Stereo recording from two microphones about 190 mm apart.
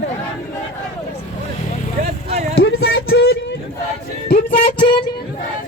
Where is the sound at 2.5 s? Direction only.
60° left (ahead or behind).